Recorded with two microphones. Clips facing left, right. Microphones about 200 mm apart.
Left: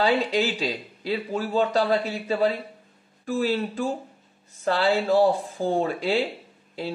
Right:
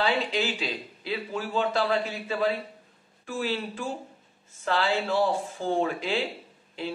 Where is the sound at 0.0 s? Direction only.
40° left (ahead or behind).